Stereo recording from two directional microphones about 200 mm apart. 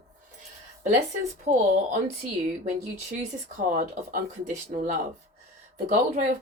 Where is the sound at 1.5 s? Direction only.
40° right (ahead or behind).